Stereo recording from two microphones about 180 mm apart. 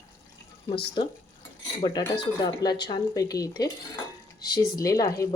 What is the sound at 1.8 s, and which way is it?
Speech, 25° left (ahead or behind).